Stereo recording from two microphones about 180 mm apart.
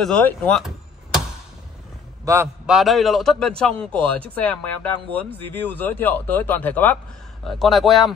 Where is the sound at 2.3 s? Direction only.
15° right (ahead or behind).